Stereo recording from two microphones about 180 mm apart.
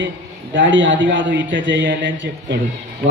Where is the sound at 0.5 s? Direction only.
90° right.